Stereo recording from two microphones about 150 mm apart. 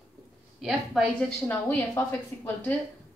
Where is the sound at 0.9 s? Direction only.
Centre (ahead or behind).